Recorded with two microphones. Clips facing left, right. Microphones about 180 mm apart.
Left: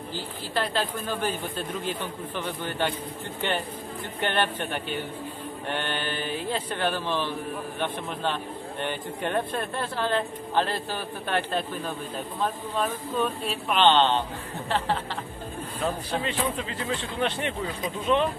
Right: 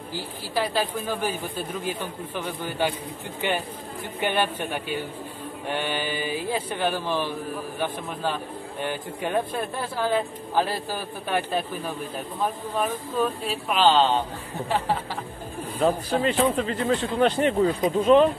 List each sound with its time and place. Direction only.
0.1 s a man's voice: 10° right (ahead or behind)
16.2 s speech: 45° right (ahead or behind)